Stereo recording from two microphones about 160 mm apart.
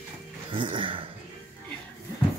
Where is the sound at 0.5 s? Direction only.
30° right (ahead or behind).